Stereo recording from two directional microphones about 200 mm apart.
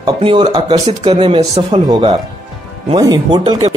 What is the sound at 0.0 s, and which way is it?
Speech, 25° right (ahead or behind).